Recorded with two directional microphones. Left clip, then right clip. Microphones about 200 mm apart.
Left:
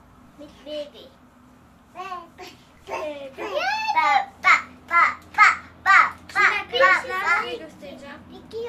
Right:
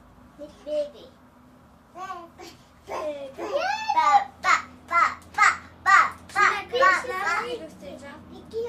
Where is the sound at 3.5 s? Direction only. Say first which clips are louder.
Left 2 dB; 10° left (ahead or behind).